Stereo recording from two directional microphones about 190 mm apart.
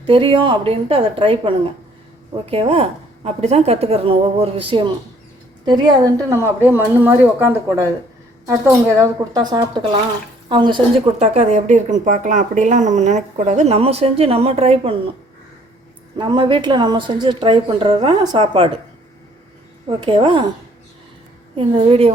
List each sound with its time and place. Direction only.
0.0 s a woman's voice: 25° right (ahead or behind)
6.3 s a woman's voice: 10° right (ahead or behind); by 14.9 s 35° right (ahead or behind)
16.1 s a woman's voice: 25° right (ahead or behind)
19.9 s a woman's voice: 25° right (ahead or behind)
21.5 s speech: 30° right (ahead or behind)